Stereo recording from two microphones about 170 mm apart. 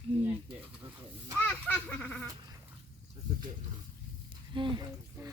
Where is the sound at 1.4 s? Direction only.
10° left (ahead or behind).